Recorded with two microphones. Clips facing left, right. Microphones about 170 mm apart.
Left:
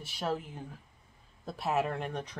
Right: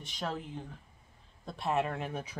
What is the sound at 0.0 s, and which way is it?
Speech, 10° left (ahead or behind).